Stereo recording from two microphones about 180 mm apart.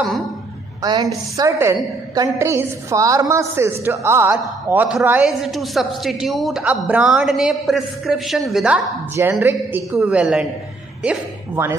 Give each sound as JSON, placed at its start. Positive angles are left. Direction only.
{"t": 0.8, "sound": "a woman's voice", "side_deg": -20}